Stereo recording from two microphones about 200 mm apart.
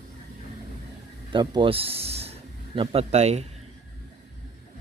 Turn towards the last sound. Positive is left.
turn(degrees=-35)  # may be behind; listen again after turning